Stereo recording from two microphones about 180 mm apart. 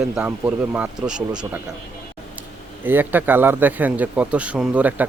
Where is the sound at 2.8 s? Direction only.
10° right (ahead or behind).